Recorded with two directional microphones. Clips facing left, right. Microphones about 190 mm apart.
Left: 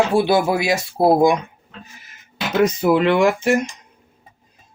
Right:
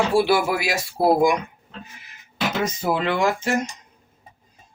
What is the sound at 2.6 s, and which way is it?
Speech, 65° left (ahead or behind).